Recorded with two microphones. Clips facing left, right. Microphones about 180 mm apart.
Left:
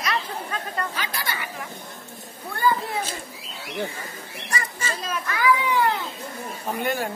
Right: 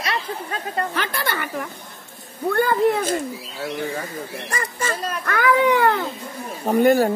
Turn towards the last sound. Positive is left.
turn(degrees=-40)  # may be behind; listen again after turning